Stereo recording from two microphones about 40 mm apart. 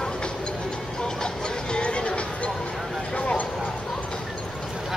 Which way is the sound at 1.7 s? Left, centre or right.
Left.